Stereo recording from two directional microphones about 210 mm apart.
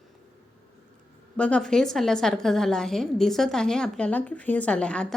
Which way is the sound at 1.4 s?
5° left (ahead or behind).